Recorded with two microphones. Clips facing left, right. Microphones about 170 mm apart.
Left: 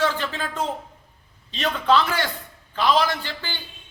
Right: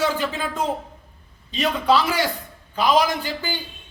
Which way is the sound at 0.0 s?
10° right (ahead or behind).